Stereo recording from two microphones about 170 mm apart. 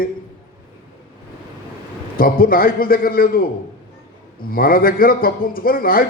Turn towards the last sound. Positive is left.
turn(degrees=60)  # may be behind; listen again after turning